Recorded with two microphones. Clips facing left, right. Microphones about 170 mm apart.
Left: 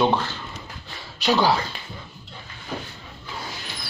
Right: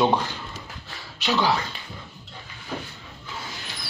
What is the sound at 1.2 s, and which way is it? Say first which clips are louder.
Speech: left 3 dB; 35° left (ahead or behind).